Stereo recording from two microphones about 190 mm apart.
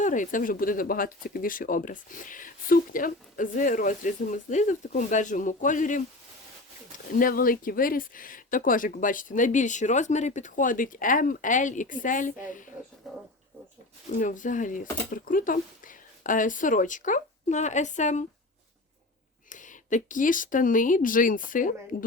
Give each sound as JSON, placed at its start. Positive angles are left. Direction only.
{"t": 0.0, "sound": "speech", "side_deg": 40}
{"t": 7.1, "sound": "speech", "side_deg": 50}
{"t": 13.0, "sound": "pigeon", "side_deg": 0}
{"t": 14.2, "sound": "speech", "side_deg": 40}
{"t": 19.5, "sound": "speech", "side_deg": 40}